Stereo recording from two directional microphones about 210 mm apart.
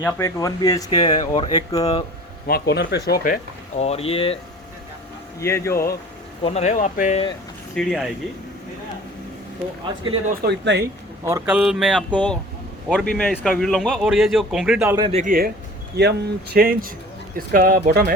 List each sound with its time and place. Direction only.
0.0 s speech: 15° left (ahead or behind)
2.5 s speech: 50° left (ahead or behind)
3.8 s speech: 30° left (ahead or behind)
5.4 s speech: 15° left (ahead or behind)
6.4 s speech: 30° left (ahead or behind)
7.8 s speech: centre (ahead or behind)
10.4 s speech: 55° right (ahead or behind)
11.3 s speech: 10° right (ahead or behind)
15.1 s speech: 40° right (ahead or behind)